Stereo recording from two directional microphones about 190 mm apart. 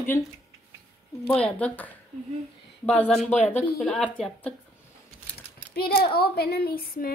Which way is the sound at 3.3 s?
35° left (ahead or behind).